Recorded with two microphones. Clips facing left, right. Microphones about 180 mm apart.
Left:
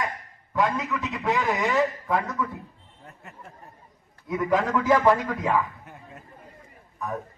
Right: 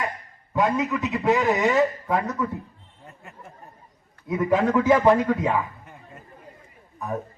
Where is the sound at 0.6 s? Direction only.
40° right (ahead or behind).